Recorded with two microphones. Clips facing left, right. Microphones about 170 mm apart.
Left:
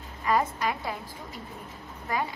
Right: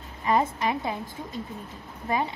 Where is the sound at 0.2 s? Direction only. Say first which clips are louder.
Right 2 dB; 25° right (ahead or behind).